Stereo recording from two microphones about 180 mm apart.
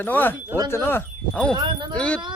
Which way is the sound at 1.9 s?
5° left (ahead or behind).